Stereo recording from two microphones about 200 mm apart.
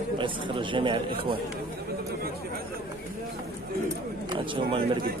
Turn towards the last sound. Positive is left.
turn(degrees=-25)  # may be behind; listen again after turning